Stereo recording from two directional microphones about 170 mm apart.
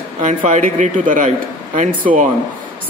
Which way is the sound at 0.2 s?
45° right (ahead or behind).